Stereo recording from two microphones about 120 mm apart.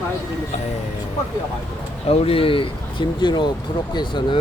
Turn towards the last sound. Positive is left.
turn(degrees=40)  # may be behind; listen again after turning